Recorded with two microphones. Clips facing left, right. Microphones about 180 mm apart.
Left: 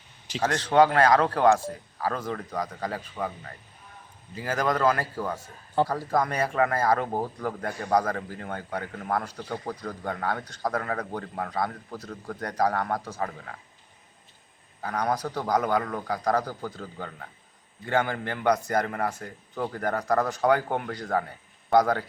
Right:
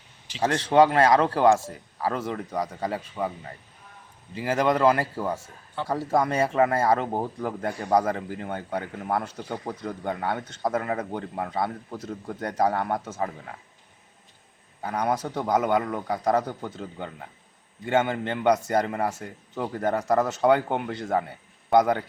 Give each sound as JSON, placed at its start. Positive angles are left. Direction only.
{"t": 0.4, "sound": "speech", "side_deg": -25}
{"t": 14.8, "sound": "speech", "side_deg": -25}